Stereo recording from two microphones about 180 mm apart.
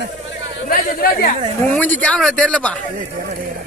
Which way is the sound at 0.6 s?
55° left (ahead or behind).